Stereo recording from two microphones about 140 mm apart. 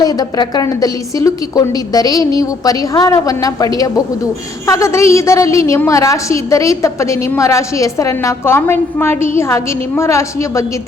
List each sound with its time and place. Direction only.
0.0 s a woman's voice: 25° left (ahead or behind)